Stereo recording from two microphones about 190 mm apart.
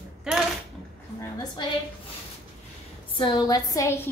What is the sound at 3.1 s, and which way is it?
Speech, 20° left (ahead or behind).